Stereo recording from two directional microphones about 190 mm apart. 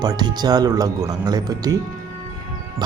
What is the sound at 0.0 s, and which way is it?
Speech, 20° right (ahead or behind).